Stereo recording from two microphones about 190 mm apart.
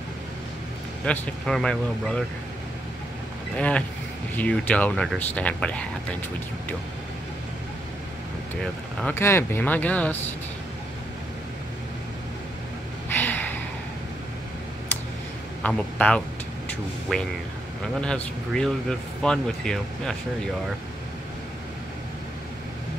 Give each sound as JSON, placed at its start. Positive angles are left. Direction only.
{"t": 1.0, "sound": "speech", "side_deg": 5}
{"t": 3.5, "sound": "speech", "side_deg": 5}
{"t": 9.0, "sound": "speech", "side_deg": 15}
{"t": 13.1, "sound": "a sound", "side_deg": 10}
{"t": 15.6, "sound": "a man's voice", "side_deg": 5}